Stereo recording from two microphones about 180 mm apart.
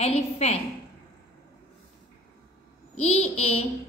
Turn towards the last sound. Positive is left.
turn(degrees=35)  # may be behind; listen again after turning